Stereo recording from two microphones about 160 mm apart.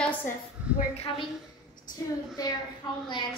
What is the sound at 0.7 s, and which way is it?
Speech, 40° left (ahead or behind).